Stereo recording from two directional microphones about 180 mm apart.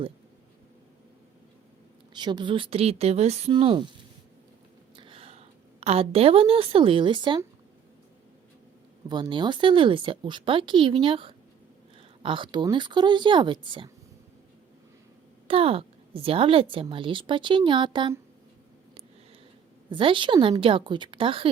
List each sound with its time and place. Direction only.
2.1 s a woman's voice: 25° right (ahead or behind)
4.9 s a woman's voice: 30° right (ahead or behind)
9.0 s a woman's voice: 25° right (ahead or behind)
15.4 s a woman's voice: 30° right (ahead or behind)
19.9 s a woman's voice: 30° right (ahead or behind)